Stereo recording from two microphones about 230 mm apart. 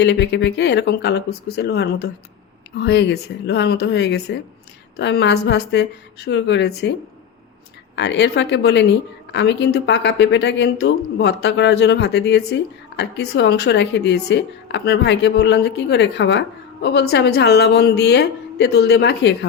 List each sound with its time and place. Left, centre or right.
0.0 s a woman's voice: left
7.9 s a woman's voice: left